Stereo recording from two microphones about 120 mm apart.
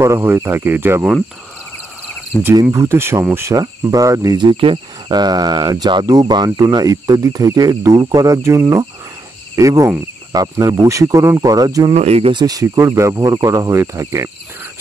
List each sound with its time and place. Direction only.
0.0 s speech: 20° right (ahead or behind)
2.6 s speech: 20° right (ahead or behind)
3.5 s cricket: 30° right (ahead or behind)
9.6 s speech: 25° right (ahead or behind)
11.9 s speech: 60° right (ahead or behind)
12.4 s speech: 30° right (ahead or behind)